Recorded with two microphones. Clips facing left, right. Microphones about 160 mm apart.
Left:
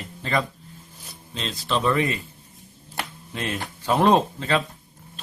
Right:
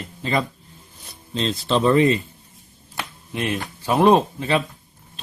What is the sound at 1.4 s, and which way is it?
Speech, 30° right (ahead or behind).